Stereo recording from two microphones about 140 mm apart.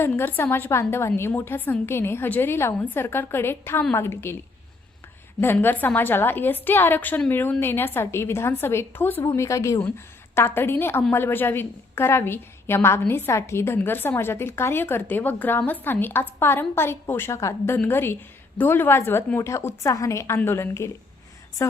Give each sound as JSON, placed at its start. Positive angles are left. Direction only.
{"t": 0.0, "sound": "a woman's voice", "side_deg": 15}
{"t": 5.4, "sound": "a woman's voice", "side_deg": 15}